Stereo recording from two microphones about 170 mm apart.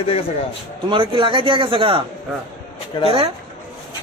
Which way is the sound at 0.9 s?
30° right (ahead or behind).